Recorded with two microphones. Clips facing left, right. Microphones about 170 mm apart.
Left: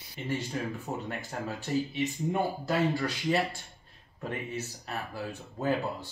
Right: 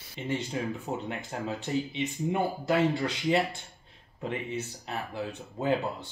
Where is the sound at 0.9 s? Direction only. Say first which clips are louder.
Right 1 dB; 20° right (ahead or behind).